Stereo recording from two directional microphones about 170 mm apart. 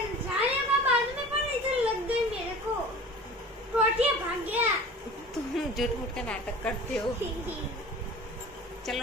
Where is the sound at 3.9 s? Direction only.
10° right (ahead or behind).